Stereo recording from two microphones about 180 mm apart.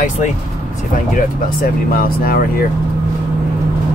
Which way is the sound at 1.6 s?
55° left (ahead or behind).